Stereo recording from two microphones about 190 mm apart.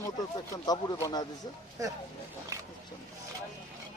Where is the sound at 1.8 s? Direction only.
15° right (ahead or behind).